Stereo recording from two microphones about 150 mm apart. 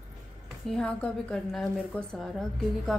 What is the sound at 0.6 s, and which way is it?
Speech, 5° left (ahead or behind).